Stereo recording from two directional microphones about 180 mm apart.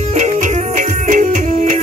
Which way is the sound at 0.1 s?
45° right (ahead or behind).